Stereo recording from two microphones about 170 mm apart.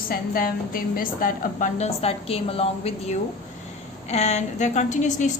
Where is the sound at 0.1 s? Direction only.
60° left (ahead or behind).